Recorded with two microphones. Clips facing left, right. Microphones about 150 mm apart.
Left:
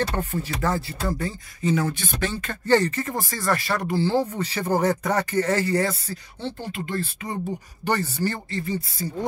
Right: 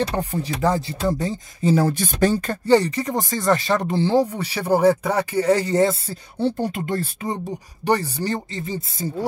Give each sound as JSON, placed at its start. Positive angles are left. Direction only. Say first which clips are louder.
{"t": 0.0, "sound": "speech", "louder": "right 3 dB", "side_deg": -15}
{"t": 1.6, "sound": "speech", "louder": "right 5 dB", "side_deg": -35}
{"t": 2.6, "sound": "speech", "louder": "right 2 dB", "side_deg": -15}
{"t": 6.4, "sound": "speech", "louder": "right 9 dB", "side_deg": -45}
{"t": 7.8, "sound": "speech", "louder": "right 3 dB", "side_deg": -15}